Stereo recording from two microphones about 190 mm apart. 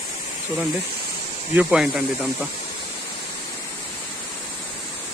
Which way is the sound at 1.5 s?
5° right (ahead or behind).